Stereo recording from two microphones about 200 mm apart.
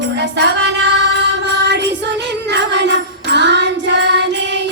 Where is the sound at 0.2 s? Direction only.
60° right (ahead or behind).